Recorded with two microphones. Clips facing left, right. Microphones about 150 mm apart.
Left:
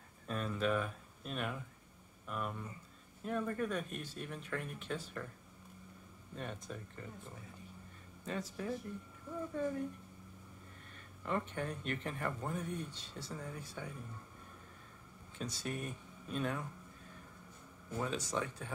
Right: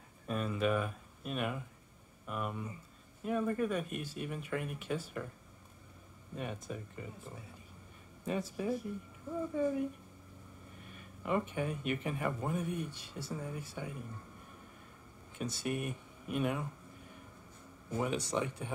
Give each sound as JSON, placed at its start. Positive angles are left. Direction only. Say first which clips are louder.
{"t": 0.3, "sound": "speech", "louder": "right 3 dB", "side_deg": -5}
{"t": 6.3, "sound": "speech", "louder": "right 4 dB", "side_deg": -5}
{"t": 10.9, "sound": "speech", "louder": "right 4 dB", "side_deg": -10}
{"t": 15.3, "sound": "speech", "louder": "right 5 dB", "side_deg": -10}
{"t": 17.9, "sound": "speech", "louder": "right 4 dB", "side_deg": -15}